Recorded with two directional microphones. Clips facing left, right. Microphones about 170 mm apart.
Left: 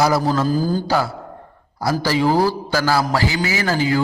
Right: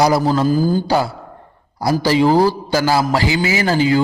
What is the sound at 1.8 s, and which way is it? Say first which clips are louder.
A man's voice: right 4 dB; 15° right (ahead or behind).